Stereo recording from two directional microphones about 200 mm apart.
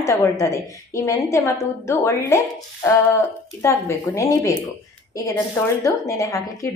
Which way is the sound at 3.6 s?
15° left (ahead or behind).